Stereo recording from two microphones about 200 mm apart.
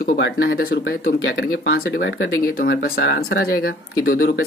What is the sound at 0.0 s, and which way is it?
Speech, 45° left (ahead or behind).